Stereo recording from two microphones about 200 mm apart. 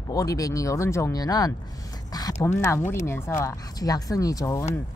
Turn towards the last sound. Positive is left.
turn(degrees=15)  # may be behind; listen again after turning